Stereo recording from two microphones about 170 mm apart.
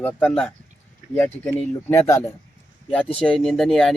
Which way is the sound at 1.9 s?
15° left (ahead or behind).